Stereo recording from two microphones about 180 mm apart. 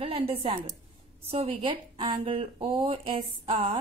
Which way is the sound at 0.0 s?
30° right (ahead or behind).